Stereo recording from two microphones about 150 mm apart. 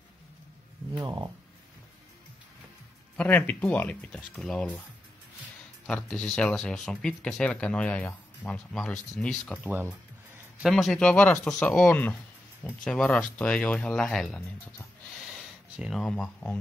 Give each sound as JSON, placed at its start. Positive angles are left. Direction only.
{"t": 0.9, "sound": "speech", "side_deg": -25}
{"t": 3.2, "sound": "speech", "side_deg": 10}
{"t": 5.9, "sound": "speech", "side_deg": 5}
{"t": 15.3, "sound": "a sound", "side_deg": -5}